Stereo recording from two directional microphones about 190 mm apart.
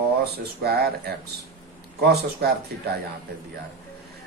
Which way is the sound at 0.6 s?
55° right (ahead or behind).